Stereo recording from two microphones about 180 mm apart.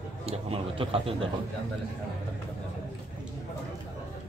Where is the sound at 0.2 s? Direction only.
35° right (ahead or behind).